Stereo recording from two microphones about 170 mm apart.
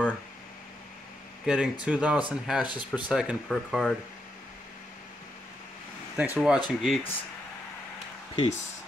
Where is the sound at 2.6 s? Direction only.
25° left (ahead or behind).